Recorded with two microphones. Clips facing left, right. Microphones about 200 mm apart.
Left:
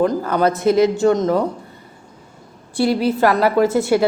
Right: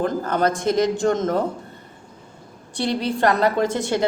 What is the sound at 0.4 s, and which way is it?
Speech, 5° left (ahead or behind).